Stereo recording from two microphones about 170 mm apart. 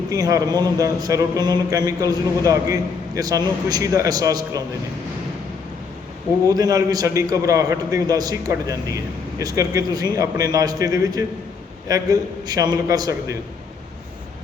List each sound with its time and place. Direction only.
0.1 s a man's voice: 20° right (ahead or behind)
3.2 s a man's voice: 20° right (ahead or behind)
6.5 s a man's voice: 20° right (ahead or behind)